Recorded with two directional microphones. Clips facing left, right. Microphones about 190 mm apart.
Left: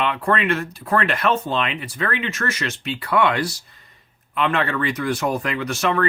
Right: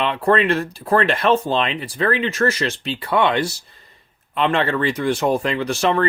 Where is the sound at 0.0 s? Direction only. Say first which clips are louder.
Right 4 dB; 30° right (ahead or behind).